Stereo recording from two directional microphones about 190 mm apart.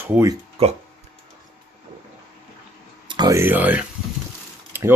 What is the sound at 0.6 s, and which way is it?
Speech, 30° right (ahead or behind).